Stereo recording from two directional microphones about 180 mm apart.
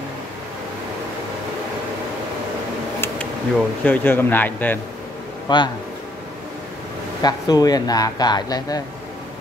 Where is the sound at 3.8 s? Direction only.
10° left (ahead or behind).